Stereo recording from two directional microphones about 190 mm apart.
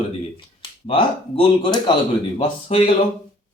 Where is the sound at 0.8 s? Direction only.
30° left (ahead or behind).